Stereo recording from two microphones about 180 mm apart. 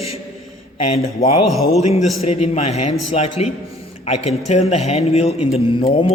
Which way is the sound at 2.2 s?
35° left (ahead or behind).